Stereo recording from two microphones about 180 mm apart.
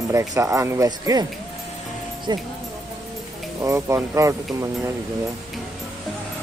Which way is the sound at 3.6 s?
20° right (ahead or behind).